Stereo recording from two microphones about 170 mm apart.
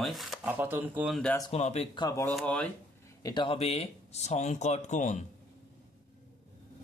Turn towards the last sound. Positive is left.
turn(degrees=45)  # may be behind; listen again after turning